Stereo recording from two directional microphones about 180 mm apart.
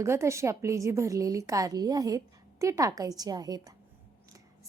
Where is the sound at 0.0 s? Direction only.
15° right (ahead or behind).